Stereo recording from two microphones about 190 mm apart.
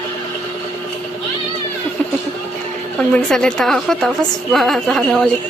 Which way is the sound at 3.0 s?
5° left (ahead or behind).